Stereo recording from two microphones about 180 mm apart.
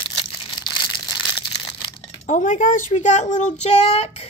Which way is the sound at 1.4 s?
25° left (ahead or behind).